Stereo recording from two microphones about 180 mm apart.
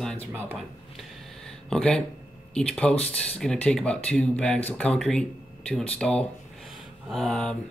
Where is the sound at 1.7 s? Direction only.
5° left (ahead or behind).